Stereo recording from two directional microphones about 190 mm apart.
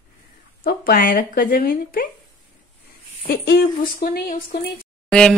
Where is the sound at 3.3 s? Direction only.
55° left (ahead or behind).